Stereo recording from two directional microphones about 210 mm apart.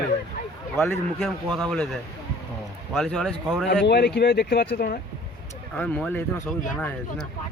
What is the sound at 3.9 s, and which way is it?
Speech, 50° left (ahead or behind).